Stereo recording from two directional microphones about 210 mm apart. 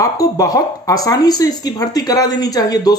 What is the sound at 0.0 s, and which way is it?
Speech, 15° left (ahead or behind).